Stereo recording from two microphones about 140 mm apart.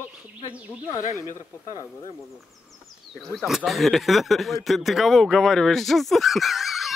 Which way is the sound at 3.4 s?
5° right (ahead or behind).